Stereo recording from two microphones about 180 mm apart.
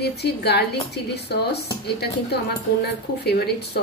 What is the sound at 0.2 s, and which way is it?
A woman's voice, 65° left (ahead or behind).